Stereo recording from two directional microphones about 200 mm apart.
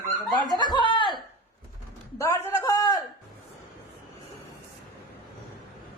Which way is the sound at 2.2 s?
15° left (ahead or behind).